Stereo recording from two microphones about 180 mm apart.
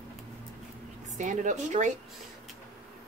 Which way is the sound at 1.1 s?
45° right (ahead or behind).